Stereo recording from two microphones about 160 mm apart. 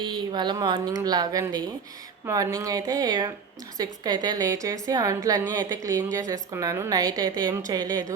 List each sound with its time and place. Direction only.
0.0 s a woman's voice: 30° right (ahead or behind)